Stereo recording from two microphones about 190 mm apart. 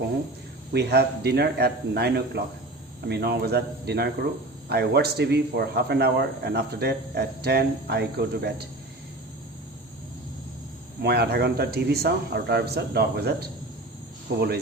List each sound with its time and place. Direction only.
0.7 s speech: 60° right (ahead or behind)
11.0 s speech: 55° right (ahead or behind)